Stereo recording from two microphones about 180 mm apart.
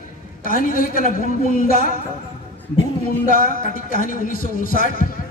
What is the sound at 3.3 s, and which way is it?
A man's voice, 50° left (ahead or behind).